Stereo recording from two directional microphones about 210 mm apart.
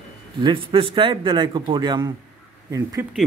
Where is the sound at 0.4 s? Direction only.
25° right (ahead or behind).